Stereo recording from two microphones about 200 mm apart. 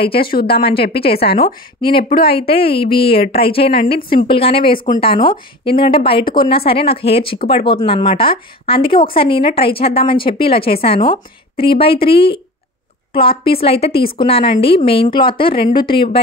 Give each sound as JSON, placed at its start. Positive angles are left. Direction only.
{"t": 0.2, "sound": "a woman's voice", "side_deg": 50}
{"t": 1.4, "sound": "speech", "side_deg": 25}
{"t": 3.8, "sound": "a woman's voice", "side_deg": 45}
{"t": 4.3, "sound": "speech", "side_deg": 25}
{"t": 4.7, "sound": "speech", "side_deg": 40}
{"t": 5.0, "sound": "speech", "side_deg": 25}